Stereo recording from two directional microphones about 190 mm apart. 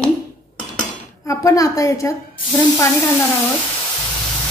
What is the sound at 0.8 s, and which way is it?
Dishes, 15° left (ahead or behind).